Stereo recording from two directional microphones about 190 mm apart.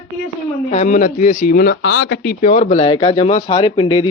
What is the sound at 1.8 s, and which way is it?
Speech, 85° left.